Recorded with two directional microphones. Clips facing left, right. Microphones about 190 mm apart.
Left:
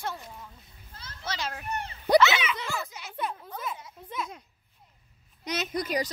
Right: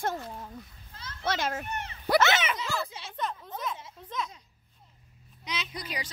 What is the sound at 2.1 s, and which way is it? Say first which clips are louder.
Speech: left 3 dB; 50° right (ahead or behind).